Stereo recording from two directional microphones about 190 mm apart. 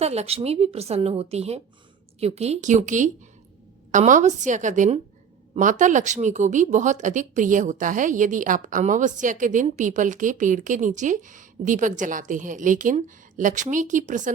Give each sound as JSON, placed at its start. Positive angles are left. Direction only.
{"t": 0.0, "sound": "speech", "side_deg": -35}